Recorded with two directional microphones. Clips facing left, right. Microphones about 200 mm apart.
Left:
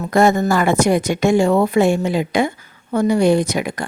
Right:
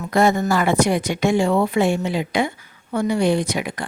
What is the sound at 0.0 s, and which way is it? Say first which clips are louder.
Speech: left 3 dB; 45° left (ahead or behind).